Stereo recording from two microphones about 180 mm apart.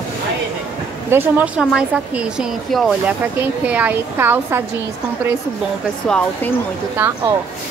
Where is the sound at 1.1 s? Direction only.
15° right (ahead or behind).